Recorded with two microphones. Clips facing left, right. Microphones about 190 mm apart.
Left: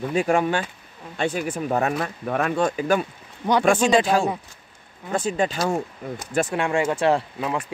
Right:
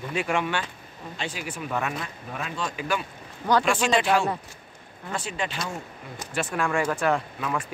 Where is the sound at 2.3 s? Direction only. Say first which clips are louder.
Left 11 dB; 55° left (ahead or behind).